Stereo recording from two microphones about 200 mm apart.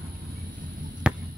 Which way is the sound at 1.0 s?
5° right (ahead or behind).